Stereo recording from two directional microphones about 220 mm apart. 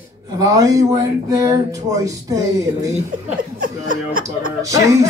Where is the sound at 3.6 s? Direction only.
40° right (ahead or behind).